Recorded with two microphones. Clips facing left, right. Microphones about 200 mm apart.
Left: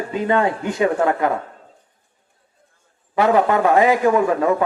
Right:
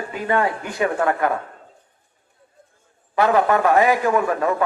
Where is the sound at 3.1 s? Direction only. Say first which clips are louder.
Left 1 dB; 20° left (ahead or behind).